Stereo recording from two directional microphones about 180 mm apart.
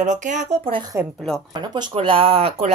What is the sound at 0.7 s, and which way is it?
Speech, 20° right (ahead or behind).